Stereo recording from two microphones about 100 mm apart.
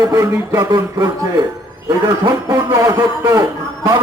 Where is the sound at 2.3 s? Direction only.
35° right (ahead or behind).